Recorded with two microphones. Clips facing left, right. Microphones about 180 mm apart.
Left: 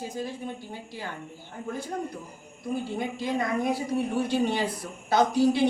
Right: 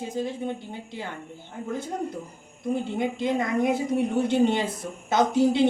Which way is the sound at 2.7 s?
20° right (ahead or behind).